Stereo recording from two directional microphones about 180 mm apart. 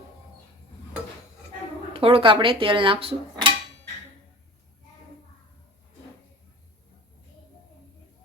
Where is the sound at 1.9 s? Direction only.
30° right (ahead or behind).